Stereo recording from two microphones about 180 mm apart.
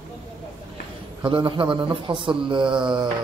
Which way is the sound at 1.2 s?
25° right (ahead or behind).